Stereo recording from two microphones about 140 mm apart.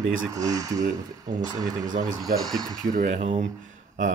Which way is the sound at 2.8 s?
60° right (ahead or behind).